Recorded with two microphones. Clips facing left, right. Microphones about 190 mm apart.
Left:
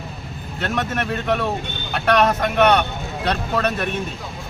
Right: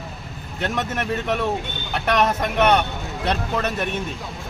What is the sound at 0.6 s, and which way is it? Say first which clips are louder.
Speech: left 1 dB; 20° right (ahead or behind).